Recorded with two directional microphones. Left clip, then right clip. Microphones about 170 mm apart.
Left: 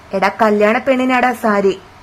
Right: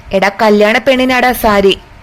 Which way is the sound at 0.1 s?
20° right (ahead or behind).